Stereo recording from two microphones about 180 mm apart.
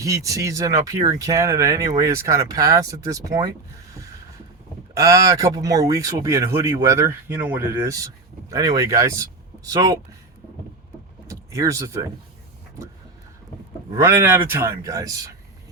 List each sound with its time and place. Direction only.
0.0 s speech: 20° right (ahead or behind)
4.9 s speech: 20° right (ahead or behind)
11.3 s speech: 15° right (ahead or behind)
13.9 s speech: 15° right (ahead or behind)